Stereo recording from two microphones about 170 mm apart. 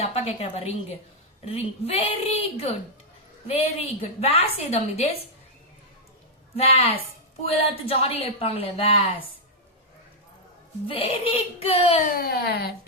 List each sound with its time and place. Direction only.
0.0 s a woman's voice: 35° left (ahead or behind)
6.6 s a woman's voice: 35° left (ahead or behind)
10.8 s a woman's voice: 35° left (ahead or behind)
12.0 s speech: 60° left (ahead or behind)